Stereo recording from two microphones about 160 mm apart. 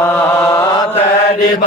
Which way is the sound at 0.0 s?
15° left (ahead or behind).